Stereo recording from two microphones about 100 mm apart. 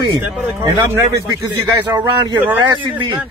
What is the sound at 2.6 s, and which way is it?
Speech, 50° right (ahead or behind).